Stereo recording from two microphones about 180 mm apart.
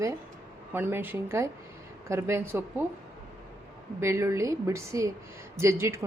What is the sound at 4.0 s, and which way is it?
Speech, 15° right (ahead or behind).